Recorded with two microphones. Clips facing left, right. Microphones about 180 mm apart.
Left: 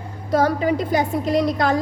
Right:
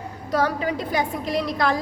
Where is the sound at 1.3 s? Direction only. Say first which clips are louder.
Left 4 dB; 45° left (ahead or behind).